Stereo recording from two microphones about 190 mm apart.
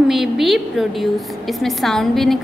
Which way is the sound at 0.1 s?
Centre (ahead or behind).